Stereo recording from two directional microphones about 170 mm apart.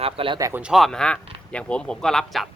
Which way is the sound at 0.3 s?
20° right (ahead or behind).